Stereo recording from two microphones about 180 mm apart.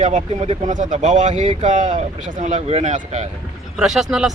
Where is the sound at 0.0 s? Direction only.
40° right (ahead or behind).